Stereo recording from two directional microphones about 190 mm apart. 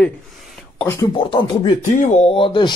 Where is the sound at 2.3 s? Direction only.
25° left (ahead or behind).